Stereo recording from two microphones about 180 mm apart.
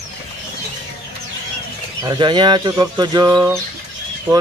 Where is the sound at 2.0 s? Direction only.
25° right (ahead or behind).